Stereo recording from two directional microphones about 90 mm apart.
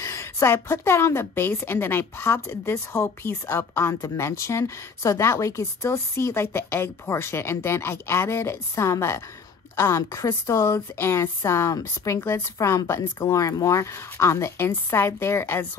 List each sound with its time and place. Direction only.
0.0 s a woman's voice: 35° left (ahead or behind)